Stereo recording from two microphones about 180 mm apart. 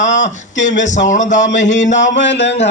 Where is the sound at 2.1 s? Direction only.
85° left.